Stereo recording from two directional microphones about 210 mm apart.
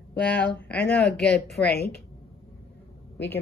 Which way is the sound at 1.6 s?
50° left (ahead or behind).